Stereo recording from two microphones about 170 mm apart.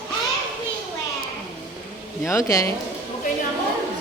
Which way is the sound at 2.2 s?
15° left (ahead or behind).